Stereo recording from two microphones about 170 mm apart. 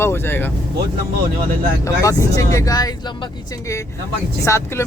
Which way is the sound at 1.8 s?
20° left (ahead or behind).